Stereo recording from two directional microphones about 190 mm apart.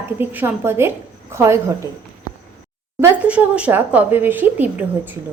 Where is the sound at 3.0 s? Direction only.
10° right (ahead or behind).